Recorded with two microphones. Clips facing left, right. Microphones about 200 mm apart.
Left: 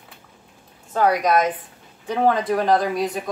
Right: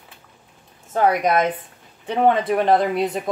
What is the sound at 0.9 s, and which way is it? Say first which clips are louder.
A woman's voice: even; 25° right (ahead or behind).